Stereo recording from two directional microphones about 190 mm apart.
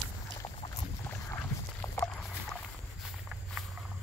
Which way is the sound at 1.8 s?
15° left (ahead or behind).